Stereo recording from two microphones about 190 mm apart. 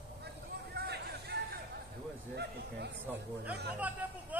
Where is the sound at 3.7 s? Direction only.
10° right (ahead or behind).